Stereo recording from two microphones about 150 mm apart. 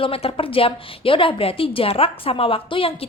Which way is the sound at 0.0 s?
40° left (ahead or behind).